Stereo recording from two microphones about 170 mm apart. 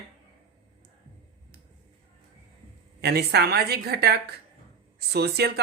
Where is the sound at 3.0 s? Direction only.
70° right (ahead or behind).